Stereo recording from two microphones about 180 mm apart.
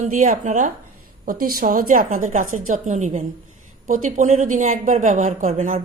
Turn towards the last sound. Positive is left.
turn(degrees=-45)  # may be behind; listen again after turning